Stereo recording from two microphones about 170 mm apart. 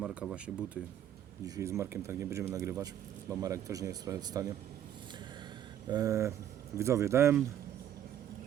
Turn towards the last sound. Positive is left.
turn(degrees=-15)  # may be behind; listen again after turning